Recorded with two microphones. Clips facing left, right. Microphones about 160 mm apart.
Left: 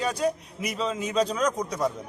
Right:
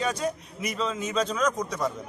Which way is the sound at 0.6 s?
5° left (ahead or behind).